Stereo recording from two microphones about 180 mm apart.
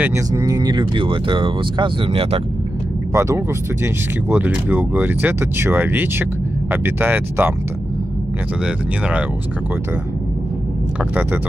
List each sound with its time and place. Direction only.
0.0 s speech: 15° right (ahead or behind)
3.1 s speech: 15° right (ahead or behind)
8.6 s speech: 5° right (ahead or behind)